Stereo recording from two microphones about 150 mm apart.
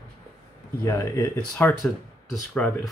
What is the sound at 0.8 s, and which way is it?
Speech, 20° left (ahead or behind).